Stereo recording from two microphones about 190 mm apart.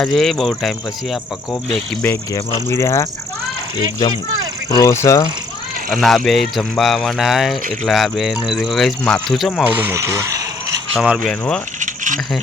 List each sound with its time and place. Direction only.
0.0 s speech: centre (ahead or behind)
2.0 s speech: 15° left (ahead or behind)
4.8 s speech: 15° left (ahead or behind)
6.0 s speech: centre (ahead or behind); by 10.8 s 15° right (ahead or behind)
10.9 s speech: 5° right (ahead or behind)
11.8 s a sound: 40° right (ahead or behind)